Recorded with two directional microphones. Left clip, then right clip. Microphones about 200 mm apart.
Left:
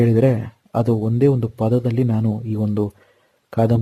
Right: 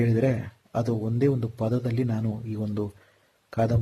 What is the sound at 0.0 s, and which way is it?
Speech, 45° left (ahead or behind).